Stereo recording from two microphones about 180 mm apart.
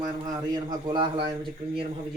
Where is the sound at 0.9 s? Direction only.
25° right (ahead or behind).